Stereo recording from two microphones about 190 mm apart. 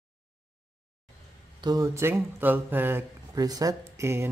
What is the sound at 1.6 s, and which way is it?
Speech, 20° right (ahead or behind).